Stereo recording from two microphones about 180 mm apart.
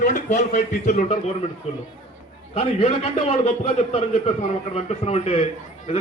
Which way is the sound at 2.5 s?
35° left (ahead or behind).